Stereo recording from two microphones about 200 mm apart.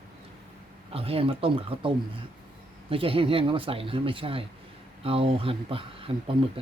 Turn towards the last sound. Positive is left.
turn(degrees=-25)  # may be behind; listen again after turning